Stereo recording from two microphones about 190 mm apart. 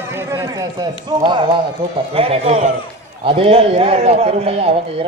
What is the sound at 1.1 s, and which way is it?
A man's voice, 25° right (ahead or behind).